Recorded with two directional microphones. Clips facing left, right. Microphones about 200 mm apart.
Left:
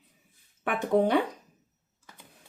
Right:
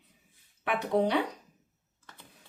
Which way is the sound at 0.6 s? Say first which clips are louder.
Left 3 dB; 45° left (ahead or behind).